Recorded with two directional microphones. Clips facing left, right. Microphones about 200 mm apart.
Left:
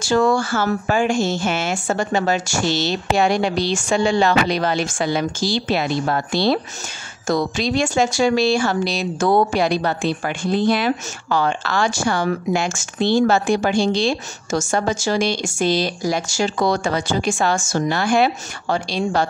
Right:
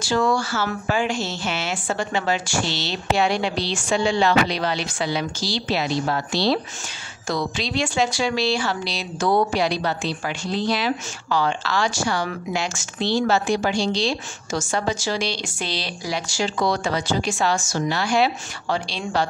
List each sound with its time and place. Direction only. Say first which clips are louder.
0.0 s speech: left 4 dB; 50° left (ahead or behind)